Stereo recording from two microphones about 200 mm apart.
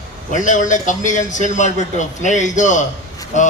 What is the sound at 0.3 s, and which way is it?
A man's voice, 40° left (ahead or behind).